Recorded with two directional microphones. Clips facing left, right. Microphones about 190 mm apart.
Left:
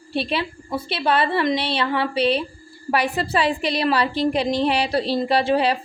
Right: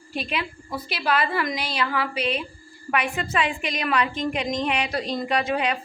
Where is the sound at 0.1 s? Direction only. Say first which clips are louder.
Left 5 dB; 30° left (ahead or behind).